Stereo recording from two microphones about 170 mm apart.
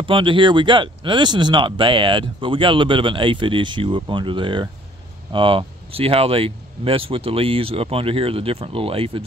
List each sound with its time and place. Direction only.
0.0 s speech: 30° right (ahead or behind)